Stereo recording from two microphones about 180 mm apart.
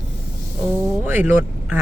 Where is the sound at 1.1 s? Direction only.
10° right (ahead or behind).